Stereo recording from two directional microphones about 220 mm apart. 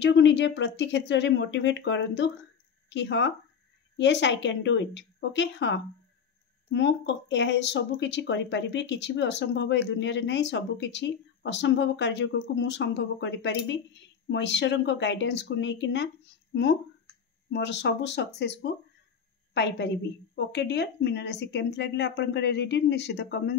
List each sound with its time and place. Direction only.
0.0 s speech: 55° left (ahead or behind)
17.5 s speech: 50° left (ahead or behind)